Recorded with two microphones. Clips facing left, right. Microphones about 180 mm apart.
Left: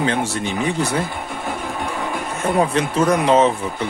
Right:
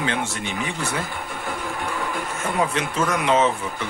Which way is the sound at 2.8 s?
35° left (ahead or behind).